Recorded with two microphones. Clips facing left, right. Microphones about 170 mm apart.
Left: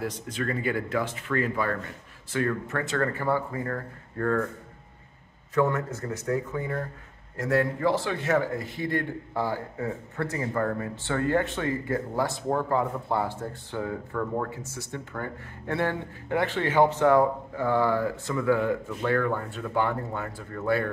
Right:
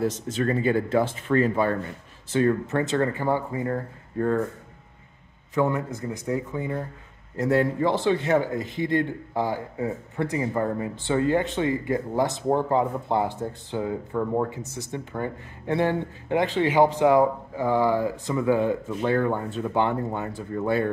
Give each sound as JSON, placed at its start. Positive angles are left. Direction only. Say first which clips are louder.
{"t": 0.0, "sound": "a man's voice", "louder": "right 6 dB", "side_deg": -25}
{"t": 5.5, "sound": "a man's voice", "louder": "right 1 dB", "side_deg": -15}